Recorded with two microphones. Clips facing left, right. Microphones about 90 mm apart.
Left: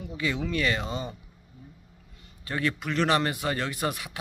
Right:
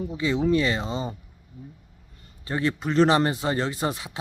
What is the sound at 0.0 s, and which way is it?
Speech, 30° right (ahead or behind).